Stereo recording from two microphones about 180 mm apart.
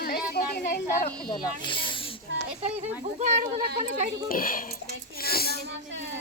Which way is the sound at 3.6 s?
55° right (ahead or behind).